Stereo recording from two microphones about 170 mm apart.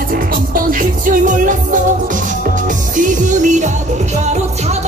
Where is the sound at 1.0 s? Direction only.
50° right (ahead or behind).